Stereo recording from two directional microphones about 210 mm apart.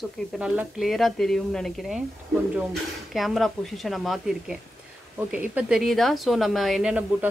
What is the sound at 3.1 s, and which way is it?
Speech, centre (ahead or behind).